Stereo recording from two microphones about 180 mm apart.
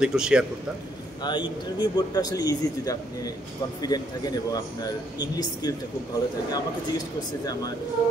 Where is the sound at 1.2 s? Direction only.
25° left (ahead or behind).